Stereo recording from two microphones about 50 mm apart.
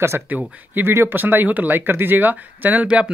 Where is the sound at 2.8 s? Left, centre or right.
Right.